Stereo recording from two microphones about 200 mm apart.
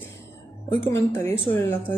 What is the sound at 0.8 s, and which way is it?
A woman's voice, 10° left (ahead or behind).